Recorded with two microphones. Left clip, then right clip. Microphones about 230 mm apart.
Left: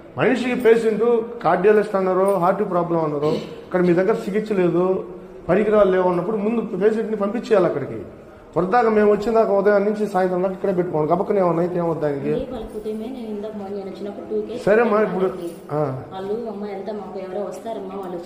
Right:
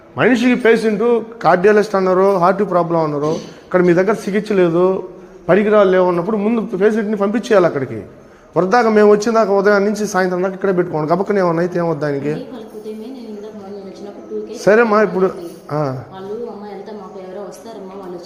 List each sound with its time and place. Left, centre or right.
0.2 s a man's voice: right
14.6 s a man's voice: right